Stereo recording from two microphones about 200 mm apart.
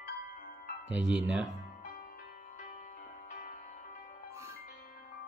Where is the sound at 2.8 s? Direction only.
40° left (ahead or behind).